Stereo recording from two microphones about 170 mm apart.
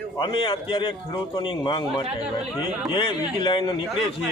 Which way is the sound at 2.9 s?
30° left (ahead or behind).